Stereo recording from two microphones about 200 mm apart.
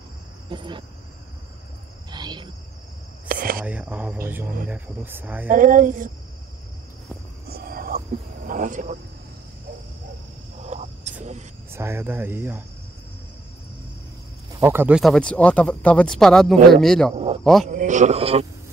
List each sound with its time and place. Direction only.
0.5 s speech: 25° right (ahead or behind)
2.0 s cricket: 20° right (ahead or behind)
3.3 s whispering: 45° right (ahead or behind)
3.6 s a man's voice: 10° right (ahead or behind)
5.5 s speech: 40° right (ahead or behind)
7.4 s whispering: 50° right (ahead or behind)
8.5 s speech: 40° right (ahead or behind)
10.6 s a sound: 35° right (ahead or behind)
11.7 s a man's voice: 10° right (ahead or behind)
14.5 s speech: 15° right (ahead or behind); by 17.1 s 5° left (ahead or behind)
17.1 s speech: 30° right (ahead or behind)
17.4 s speech: centre (ahead or behind)
17.6 s a man's voice: 40° right (ahead or behind)